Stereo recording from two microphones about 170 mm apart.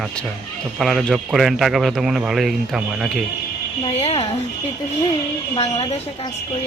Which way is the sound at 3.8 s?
35° left (ahead or behind).